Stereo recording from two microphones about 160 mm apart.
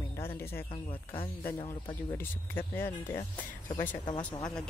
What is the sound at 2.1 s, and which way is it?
Speech, 15° left (ahead or behind).